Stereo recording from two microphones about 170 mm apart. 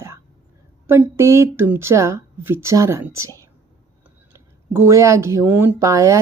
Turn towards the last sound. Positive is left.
turn(degrees=-20)  # may be behind; listen again after turning